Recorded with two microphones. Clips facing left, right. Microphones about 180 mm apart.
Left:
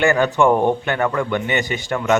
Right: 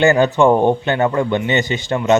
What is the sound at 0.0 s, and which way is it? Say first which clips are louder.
A man's voice: right 3 dB; 25° right (ahead or behind).